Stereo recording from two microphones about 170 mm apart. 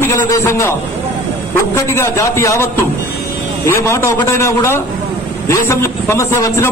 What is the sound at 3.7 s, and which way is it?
Music, 15° left (ahead or behind).